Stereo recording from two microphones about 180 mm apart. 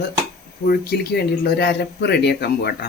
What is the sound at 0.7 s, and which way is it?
Speech, 60° left (ahead or behind).